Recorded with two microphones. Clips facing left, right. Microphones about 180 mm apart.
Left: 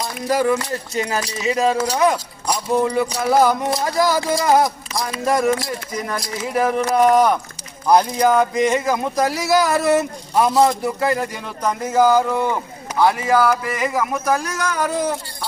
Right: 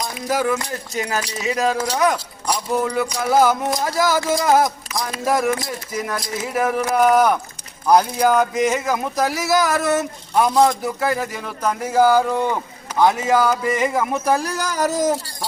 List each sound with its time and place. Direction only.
0.0 s speech: centre (ahead or behind)
4.9 s a sound: 30° left (ahead or behind)
5.2 s speech: centre (ahead or behind); by 15.4 s 40° right (ahead or behind)